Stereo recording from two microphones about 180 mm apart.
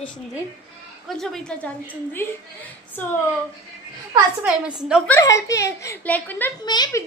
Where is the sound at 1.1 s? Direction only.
Centre (ahead or behind).